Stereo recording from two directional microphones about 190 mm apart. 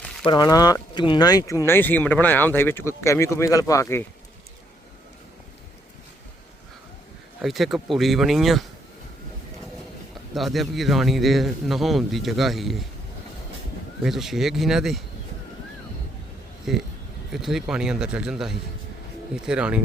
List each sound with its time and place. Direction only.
0.3 s speech: 20° left (ahead or behind)
7.4 s a man's voice: centre (ahead or behind)
10.3 s a man's voice: centre (ahead or behind)
14.0 s a man's voice: centre (ahead or behind)
16.7 s a man's voice: centre (ahead or behind)